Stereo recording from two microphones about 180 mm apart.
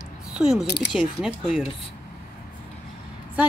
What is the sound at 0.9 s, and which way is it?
Speech, 5° right (ahead or behind).